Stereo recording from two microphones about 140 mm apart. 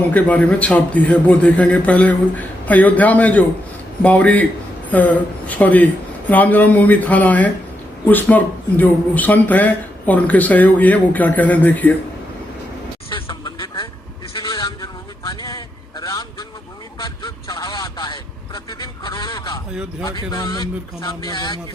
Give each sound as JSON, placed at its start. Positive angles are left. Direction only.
{"t": 0.1, "sound": "speech", "side_deg": 10}
{"t": 13.1, "sound": "a sound", "side_deg": 40}
{"t": 14.3, "sound": "vehicle", "side_deg": 35}
{"t": 19.7, "sound": "speech", "side_deg": -5}
{"t": 20.1, "sound": "speech", "side_deg": 30}